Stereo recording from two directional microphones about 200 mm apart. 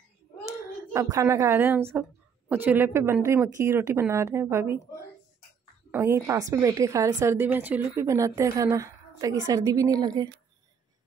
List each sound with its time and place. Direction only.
0.9 s a woman's voice: 15° right (ahead or behind)
5.9 s a woman's voice: 10° right (ahead or behind)